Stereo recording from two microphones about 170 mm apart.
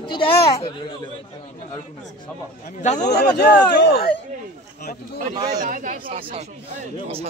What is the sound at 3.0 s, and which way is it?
Speech, 70° left (ahead or behind).